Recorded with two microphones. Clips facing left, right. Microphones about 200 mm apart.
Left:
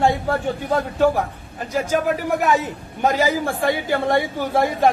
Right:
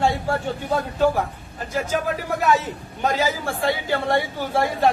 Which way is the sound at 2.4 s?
15° left (ahead or behind).